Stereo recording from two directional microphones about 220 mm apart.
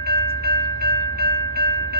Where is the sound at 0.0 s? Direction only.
45° right (ahead or behind).